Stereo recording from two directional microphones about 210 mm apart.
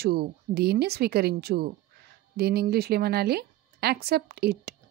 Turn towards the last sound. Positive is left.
turn(degrees=-50)  # may be behind; listen again after turning